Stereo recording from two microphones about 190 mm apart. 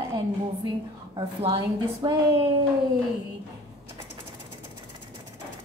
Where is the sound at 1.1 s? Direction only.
25° right (ahead or behind).